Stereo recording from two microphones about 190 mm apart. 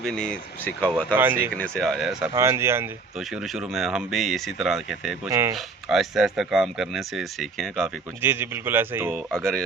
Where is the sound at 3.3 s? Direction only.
Centre (ahead or behind).